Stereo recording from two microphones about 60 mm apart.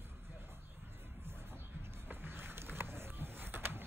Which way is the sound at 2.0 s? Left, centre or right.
Right.